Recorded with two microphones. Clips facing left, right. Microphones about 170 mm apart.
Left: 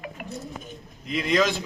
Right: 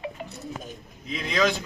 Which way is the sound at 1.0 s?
Centre (ahead or behind).